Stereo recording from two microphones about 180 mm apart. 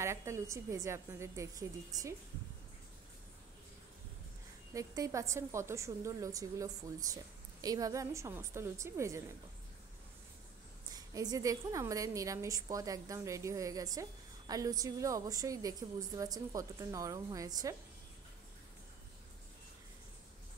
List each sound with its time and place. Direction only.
0.0 s a woman's voice: 15° right (ahead or behind)
4.7 s a woman's voice: 20° right (ahead or behind)
10.9 s a woman's voice: 20° right (ahead or behind)